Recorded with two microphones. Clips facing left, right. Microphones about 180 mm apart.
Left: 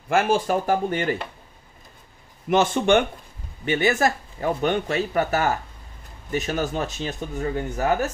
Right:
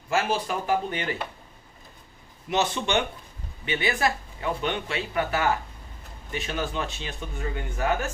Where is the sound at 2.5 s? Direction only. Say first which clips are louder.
Left 7 dB; 50° left (ahead or behind).